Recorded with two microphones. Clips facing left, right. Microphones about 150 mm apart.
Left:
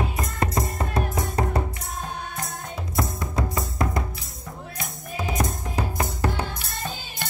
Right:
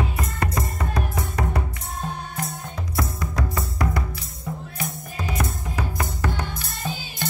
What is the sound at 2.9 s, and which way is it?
Music, 25° left (ahead or behind).